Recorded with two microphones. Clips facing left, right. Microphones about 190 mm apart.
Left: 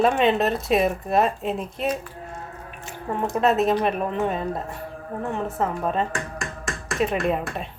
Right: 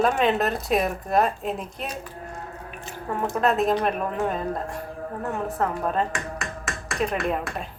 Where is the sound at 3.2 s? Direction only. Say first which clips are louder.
Left 2 dB; centre (ahead or behind).